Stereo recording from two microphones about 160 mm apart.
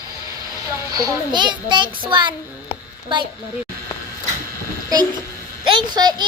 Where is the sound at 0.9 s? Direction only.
20° right (ahead or behind).